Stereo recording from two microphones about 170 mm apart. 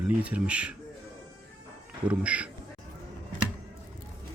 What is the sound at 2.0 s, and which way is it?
Speech, 5° right (ahead or behind).